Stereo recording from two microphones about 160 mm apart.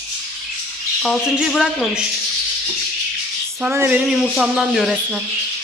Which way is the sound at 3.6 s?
10° right (ahead or behind).